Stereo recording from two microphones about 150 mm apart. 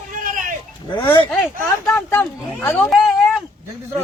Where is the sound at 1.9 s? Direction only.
15° left (ahead or behind).